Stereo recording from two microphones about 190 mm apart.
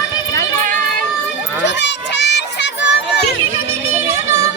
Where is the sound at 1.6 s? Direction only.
65° left (ahead or behind).